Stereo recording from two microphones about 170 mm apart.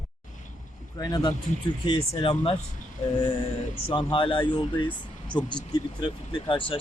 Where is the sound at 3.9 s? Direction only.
30° left (ahead or behind).